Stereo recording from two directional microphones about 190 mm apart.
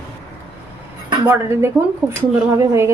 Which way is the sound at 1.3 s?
15° right (ahead or behind).